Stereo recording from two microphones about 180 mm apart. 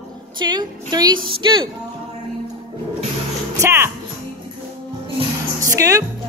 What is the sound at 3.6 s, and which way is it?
Speech, 15° right (ahead or behind).